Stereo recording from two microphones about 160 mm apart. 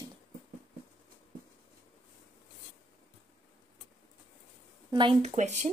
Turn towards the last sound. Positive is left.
turn(degrees=-45)  # may be behind; listen again after turning